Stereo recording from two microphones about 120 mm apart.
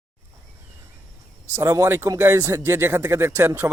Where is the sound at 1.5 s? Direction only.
25° right (ahead or behind).